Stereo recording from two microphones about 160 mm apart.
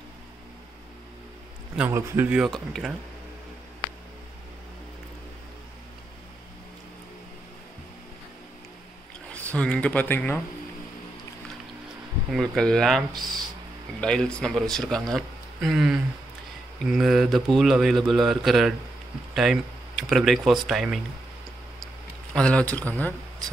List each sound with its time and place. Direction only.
1.8 s speech: 15° right (ahead or behind)
9.3 s speech: 5° left (ahead or behind)
12.3 s speech: centre (ahead or behind)
13.1 s speech: 25° right (ahead or behind)
14.0 s speech: 5° left (ahead or behind)
22.3 s speech: 5° left (ahead or behind)